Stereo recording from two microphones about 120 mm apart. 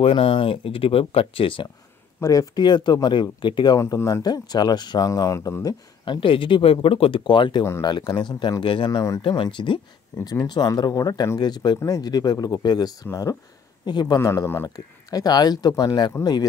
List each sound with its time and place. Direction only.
0.0 s speech: 50° left (ahead or behind)
2.1 s speech: 30° left (ahead or behind)
3.8 s speech: 25° left (ahead or behind)
6.2 s speech: 45° left (ahead or behind)